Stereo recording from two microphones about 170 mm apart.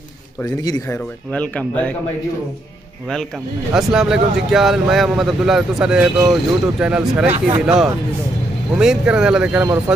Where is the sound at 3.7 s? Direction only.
5° right (ahead or behind).